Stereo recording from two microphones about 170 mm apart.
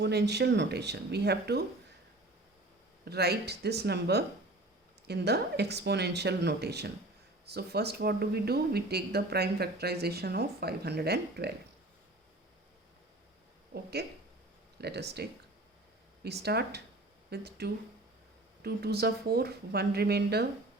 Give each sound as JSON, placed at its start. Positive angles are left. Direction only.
{"t": 0.0, "sound": "speech", "side_deg": -80}
{"t": 3.0, "sound": "speech", "side_deg": -70}
{"t": 14.8, "sound": "speech", "side_deg": -75}